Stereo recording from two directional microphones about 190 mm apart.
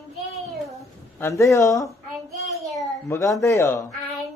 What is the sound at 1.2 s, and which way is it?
Speech, 15° left (ahead or behind).